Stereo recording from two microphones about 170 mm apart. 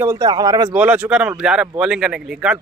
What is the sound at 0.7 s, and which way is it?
A man's voice, 10° right (ahead or behind).